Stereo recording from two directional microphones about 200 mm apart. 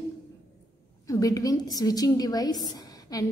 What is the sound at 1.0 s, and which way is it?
A woman's voice, 15° left (ahead or behind).